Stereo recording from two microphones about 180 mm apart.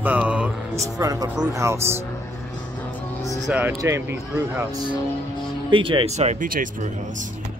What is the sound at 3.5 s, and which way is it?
Speech, 10° right (ahead or behind).